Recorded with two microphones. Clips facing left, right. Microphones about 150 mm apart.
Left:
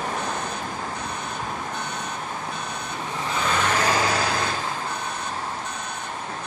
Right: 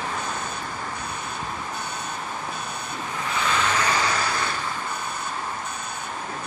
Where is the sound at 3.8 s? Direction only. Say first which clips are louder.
Left 2 dB; 50° left (ahead or behind).